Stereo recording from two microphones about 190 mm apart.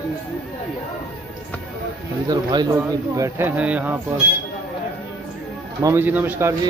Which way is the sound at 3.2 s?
10° right (ahead or behind).